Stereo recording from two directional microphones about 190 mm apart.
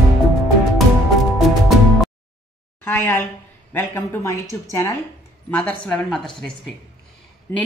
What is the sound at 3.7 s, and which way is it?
A woman's voice, 10° left (ahead or behind).